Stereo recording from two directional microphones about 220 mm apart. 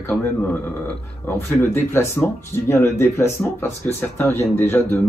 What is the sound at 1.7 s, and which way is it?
Speech, 10° left (ahead or behind).